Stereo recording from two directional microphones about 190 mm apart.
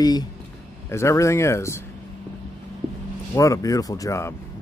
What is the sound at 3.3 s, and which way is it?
Speech, 15° left (ahead or behind).